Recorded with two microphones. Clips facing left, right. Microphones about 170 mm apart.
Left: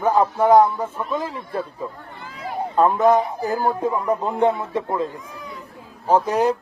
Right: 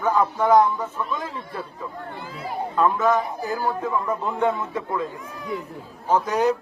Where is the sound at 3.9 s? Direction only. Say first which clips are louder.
Left 3 dB; 20° left (ahead or behind).